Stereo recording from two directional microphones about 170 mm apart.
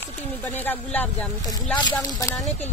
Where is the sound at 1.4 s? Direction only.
20° left (ahead or behind).